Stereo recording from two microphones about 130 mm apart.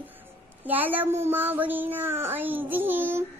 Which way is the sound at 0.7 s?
15° right (ahead or behind).